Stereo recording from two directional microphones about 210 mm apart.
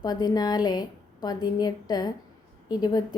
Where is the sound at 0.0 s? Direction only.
20° left (ahead or behind).